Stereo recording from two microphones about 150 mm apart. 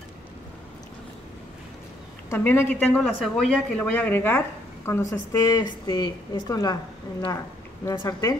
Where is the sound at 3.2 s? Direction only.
Centre (ahead or behind).